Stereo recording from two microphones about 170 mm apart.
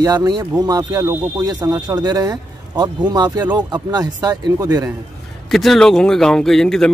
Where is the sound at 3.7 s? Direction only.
25° right (ahead or behind).